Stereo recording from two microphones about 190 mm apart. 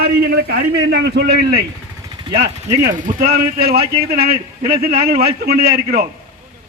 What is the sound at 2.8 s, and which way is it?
A man's voice, 45° right (ahead or behind).